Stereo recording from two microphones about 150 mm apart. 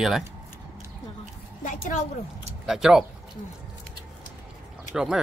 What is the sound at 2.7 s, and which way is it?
Speech, 5° right (ahead or behind).